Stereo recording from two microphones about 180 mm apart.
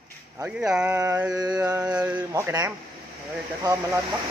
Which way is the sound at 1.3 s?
20° right (ahead or behind).